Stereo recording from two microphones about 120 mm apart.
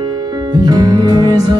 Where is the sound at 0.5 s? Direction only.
35° right (ahead or behind).